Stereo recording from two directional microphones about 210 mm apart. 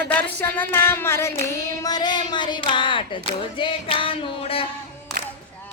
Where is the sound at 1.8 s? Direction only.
20° left (ahead or behind).